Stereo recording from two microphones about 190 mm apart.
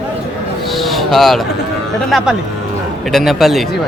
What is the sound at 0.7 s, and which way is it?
Speech, centre (ahead or behind).